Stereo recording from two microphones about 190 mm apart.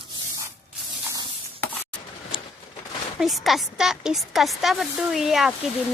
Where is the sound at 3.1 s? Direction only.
Centre (ahead or behind).